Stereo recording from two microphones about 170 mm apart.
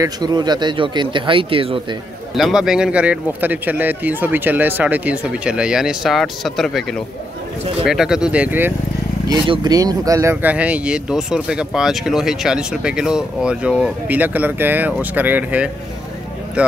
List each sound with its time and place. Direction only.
0.0 s speech: 25° right (ahead or behind)
2.3 s speech: centre (ahead or behind)
9.3 s speech: 25° right (ahead or behind)
10.3 s speech: 10° right (ahead or behind)